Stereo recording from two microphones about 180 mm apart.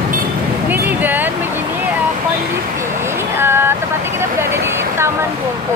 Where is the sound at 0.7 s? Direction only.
10° right (ahead or behind).